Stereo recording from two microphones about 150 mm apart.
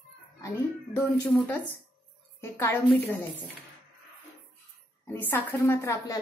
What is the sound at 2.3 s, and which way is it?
Speech, 15° left (ahead or behind).